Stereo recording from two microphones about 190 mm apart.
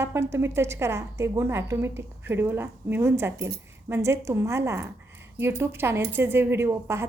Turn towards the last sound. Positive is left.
turn(degrees=-15)  # may be behind; listen again after turning